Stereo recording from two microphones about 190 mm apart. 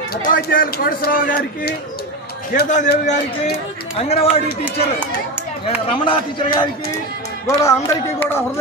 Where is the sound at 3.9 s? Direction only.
30° left (ahead or behind).